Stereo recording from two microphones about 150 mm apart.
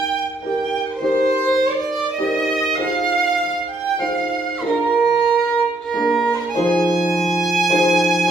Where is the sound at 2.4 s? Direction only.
Centre (ahead or behind).